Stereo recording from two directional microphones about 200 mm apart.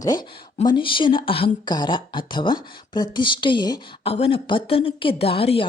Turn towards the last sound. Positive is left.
turn(degrees=30)  # may be behind; listen again after turning